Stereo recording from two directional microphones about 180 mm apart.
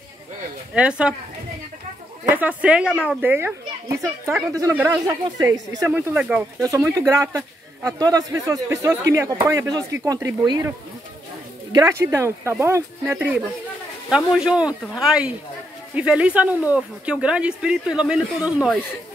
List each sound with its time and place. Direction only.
0.7 s speech: 5° right (ahead or behind)
2.2 s a man's voice: 10° right (ahead or behind)
5.9 s a man's voice: 5° right (ahead or behind)
6.6 s a man's voice: 15° right (ahead or behind)
11.7 s a man's voice: 15° right (ahead or behind)